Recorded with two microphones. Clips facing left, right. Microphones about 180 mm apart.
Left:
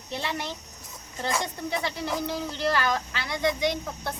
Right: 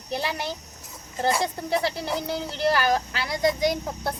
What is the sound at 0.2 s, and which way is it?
A child's voice, 35° right (ahead or behind).